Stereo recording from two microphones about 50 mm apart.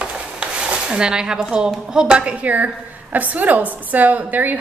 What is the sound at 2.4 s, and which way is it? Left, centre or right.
A woman's voice, right.